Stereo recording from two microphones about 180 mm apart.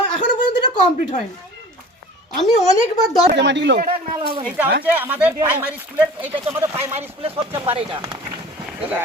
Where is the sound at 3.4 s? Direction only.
75° right (ahead or behind).